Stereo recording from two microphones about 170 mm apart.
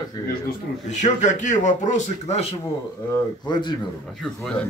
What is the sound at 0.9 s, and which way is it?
A man's voice, 45° left (ahead or behind).